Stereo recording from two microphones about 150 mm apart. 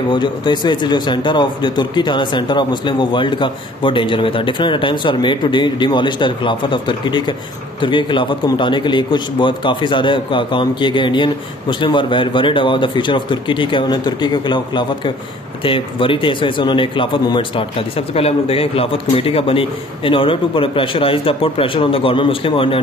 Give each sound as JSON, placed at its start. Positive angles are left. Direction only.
{"t": 0.1, "sound": "a man's voice", "side_deg": 30}